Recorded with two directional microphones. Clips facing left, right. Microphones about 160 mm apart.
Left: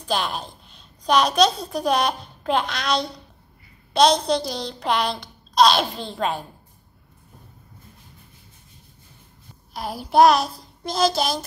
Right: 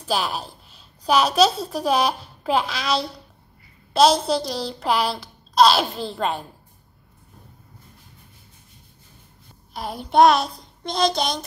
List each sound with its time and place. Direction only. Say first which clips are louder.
0.0 s a child's voice: right 1 dB; 5° right (ahead or behind)
9.8 s a child's voice: even; centre (ahead or behind)